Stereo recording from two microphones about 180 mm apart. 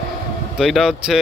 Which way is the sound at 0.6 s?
5° right (ahead or behind).